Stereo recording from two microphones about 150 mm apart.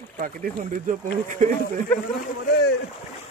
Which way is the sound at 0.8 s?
60° right (ahead or behind).